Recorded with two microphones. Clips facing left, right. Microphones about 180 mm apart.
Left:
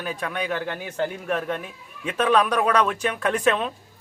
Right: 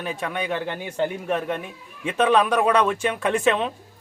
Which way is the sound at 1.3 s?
15° right (ahead or behind).